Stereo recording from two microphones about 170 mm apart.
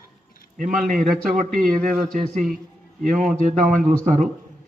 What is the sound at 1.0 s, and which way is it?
Speech, centre (ahead or behind).